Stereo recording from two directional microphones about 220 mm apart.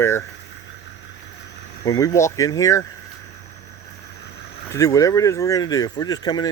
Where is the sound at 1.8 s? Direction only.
15° left (ahead or behind).